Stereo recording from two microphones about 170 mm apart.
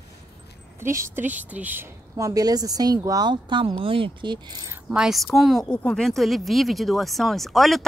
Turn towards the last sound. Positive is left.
turn(degrees=0)  # may be behind; listen again after turning